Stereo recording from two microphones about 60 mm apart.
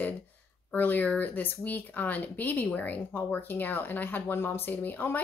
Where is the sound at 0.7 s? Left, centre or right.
Left.